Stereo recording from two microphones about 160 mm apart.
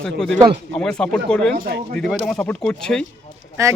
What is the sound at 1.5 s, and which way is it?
Speech, 75° right (ahead or behind).